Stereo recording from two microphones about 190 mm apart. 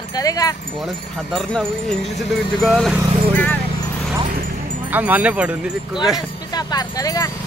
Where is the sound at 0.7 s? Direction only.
Centre (ahead or behind).